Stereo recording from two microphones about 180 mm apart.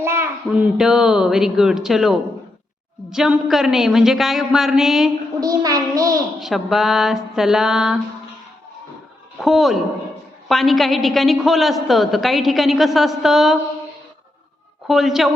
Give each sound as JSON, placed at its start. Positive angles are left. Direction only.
{"t": 0.0, "sound": "a child's voice", "side_deg": -15}
{"t": 5.4, "sound": "a child's voice", "side_deg": -20}
{"t": 6.4, "sound": "a woman's voice", "side_deg": 0}
{"t": 9.4, "sound": "a woman's voice", "side_deg": 0}
{"t": 14.8, "sound": "a woman's voice", "side_deg": 0}